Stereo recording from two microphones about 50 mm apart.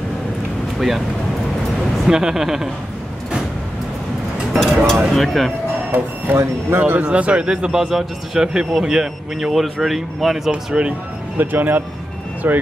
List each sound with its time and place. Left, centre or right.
0.7 s speech: centre
2.0 s speech: centre
4.6 s speech: centre
5.9 s speech: right
6.3 s speech: right
6.8 s speech: right; by 10.5 s centre
10.5 s speech: right
11.3 s speech: right